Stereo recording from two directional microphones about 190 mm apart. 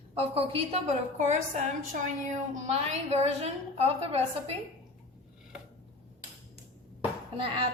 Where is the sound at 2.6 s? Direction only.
35° right (ahead or behind).